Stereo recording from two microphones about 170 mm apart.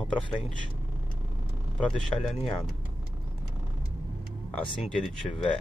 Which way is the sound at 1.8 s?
Centre (ahead or behind).